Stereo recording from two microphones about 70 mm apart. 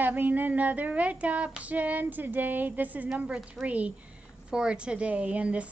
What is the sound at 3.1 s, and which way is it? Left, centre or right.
A woman's voice, centre.